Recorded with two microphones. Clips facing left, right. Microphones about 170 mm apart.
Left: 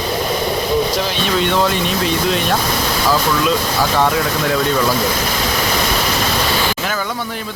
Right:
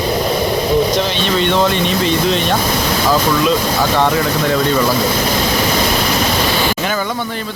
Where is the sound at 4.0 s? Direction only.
Centre (ahead or behind).